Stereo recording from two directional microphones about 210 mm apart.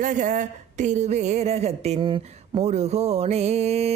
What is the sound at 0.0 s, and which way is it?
A woman's voice, 35° right (ahead or behind).